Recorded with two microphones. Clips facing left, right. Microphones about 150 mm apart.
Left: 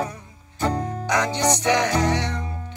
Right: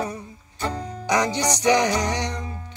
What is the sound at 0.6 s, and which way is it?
Music, 50° left (ahead or behind).